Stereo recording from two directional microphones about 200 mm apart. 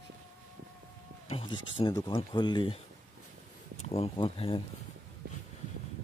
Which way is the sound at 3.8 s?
30° left (ahead or behind).